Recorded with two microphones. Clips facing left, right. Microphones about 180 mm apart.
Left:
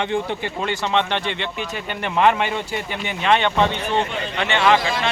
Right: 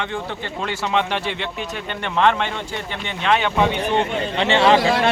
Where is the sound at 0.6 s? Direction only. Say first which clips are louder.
Even; 5° right (ahead or behind).